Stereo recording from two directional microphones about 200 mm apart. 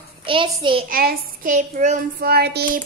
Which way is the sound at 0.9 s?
45° right (ahead or behind).